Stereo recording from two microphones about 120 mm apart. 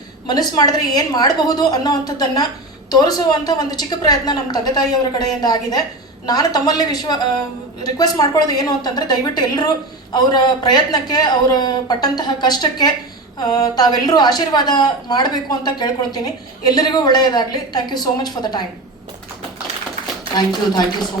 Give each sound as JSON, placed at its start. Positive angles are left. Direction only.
{"t": 0.3, "sound": "a woman's voice", "side_deg": 35}